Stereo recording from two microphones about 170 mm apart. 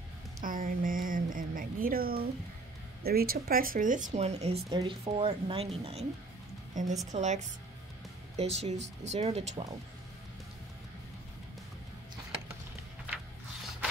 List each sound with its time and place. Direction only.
0.4 s a sound: 55° right (ahead or behind)
3.0 s speech: 65° right (ahead or behind); by 4.6 s 40° right (ahead or behind)
4.6 s speech: 20° right (ahead or behind)
6.7 s a woman's voice: 45° right (ahead or behind)